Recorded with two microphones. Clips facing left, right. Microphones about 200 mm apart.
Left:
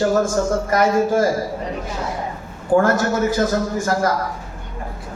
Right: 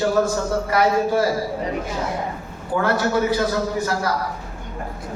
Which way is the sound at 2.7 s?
45° left (ahead or behind).